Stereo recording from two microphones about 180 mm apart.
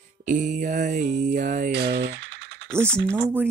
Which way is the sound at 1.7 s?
70° right (ahead or behind).